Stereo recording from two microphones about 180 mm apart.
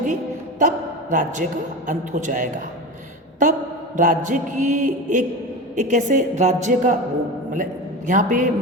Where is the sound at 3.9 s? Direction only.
45° right (ahead or behind).